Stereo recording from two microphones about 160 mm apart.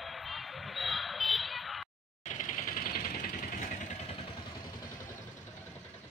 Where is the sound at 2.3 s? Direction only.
50° left (ahead or behind).